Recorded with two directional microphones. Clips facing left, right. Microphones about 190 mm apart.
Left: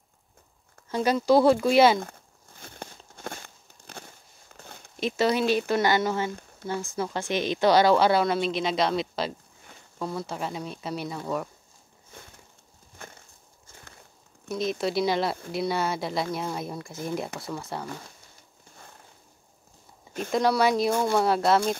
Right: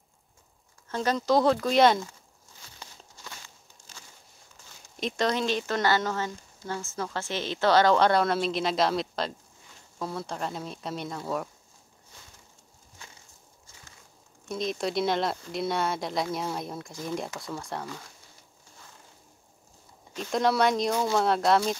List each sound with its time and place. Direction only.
0.8 s a woman's voice: 10° left (ahead or behind)
2.6 s a sound: 55° left (ahead or behind)
4.9 s a woman's voice: 5° left (ahead or behind)
13.0 s a sound: 55° left (ahead or behind)
14.5 s speech: centre (ahead or behind)
20.2 s speech: centre (ahead or behind)